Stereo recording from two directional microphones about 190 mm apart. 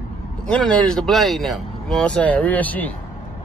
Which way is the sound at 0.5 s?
5° left (ahead or behind).